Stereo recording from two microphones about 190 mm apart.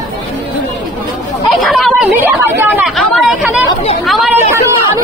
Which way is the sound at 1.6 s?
Centre (ahead or behind).